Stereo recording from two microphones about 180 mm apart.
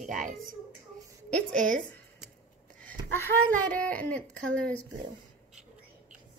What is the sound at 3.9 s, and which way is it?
Speech, 5° left (ahead or behind).